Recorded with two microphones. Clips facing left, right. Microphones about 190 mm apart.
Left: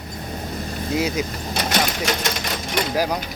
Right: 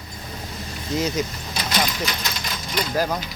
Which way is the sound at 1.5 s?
55° left (ahead or behind).